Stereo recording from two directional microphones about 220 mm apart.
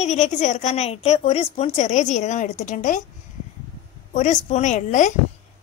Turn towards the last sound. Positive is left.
turn(degrees=35)  # may be behind; listen again after turning